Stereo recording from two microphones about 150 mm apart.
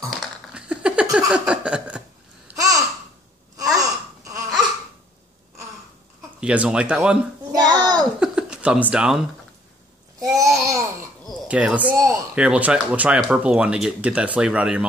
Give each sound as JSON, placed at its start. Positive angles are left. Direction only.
{"t": 0.1, "sound": "a sound", "side_deg": -5}
{"t": 2.5, "sound": "babbling", "side_deg": -20}
{"t": 6.4, "sound": "speech", "side_deg": -10}
{"t": 7.5, "sound": "child singing", "side_deg": -25}
{"t": 8.2, "sound": "speech", "side_deg": -5}
{"t": 10.1, "sound": "babbling", "side_deg": -25}
{"t": 11.2, "sound": "speech", "side_deg": -10}